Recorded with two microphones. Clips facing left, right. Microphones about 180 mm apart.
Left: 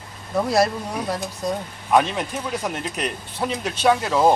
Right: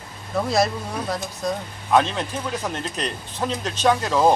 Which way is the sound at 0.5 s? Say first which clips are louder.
Left 1 dB; 10° left (ahead or behind).